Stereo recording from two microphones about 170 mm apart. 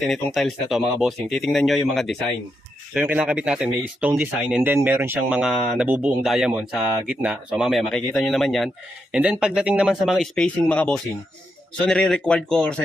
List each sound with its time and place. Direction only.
0.0 s speech: centre (ahead or behind)